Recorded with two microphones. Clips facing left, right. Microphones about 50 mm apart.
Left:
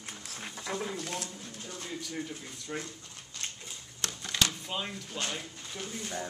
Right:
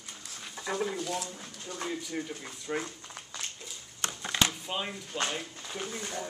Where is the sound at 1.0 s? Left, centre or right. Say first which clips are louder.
Right 3 dB; left.